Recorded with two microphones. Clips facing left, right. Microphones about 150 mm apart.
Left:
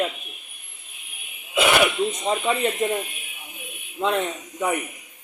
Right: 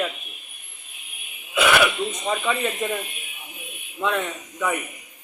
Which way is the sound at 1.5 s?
25° left (ahead or behind).